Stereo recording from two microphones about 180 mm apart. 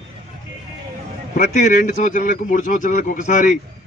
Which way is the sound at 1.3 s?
45° left (ahead or behind).